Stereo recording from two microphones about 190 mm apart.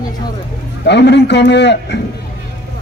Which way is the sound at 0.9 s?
65° left (ahead or behind).